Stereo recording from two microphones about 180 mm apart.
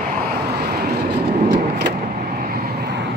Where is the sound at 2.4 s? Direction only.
60° right (ahead or behind).